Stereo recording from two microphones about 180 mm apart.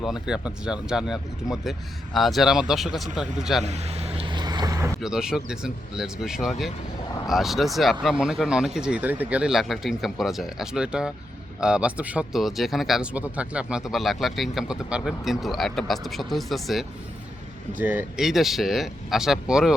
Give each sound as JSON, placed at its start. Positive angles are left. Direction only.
{"t": 0.0, "sound": "speech", "side_deg": -5}
{"t": 3.6, "sound": "vehicle", "side_deg": -35}
{"t": 4.9, "sound": "speech", "side_deg": -5}